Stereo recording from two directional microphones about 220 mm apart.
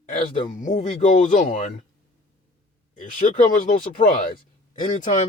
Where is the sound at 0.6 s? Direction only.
35° left (ahead or behind).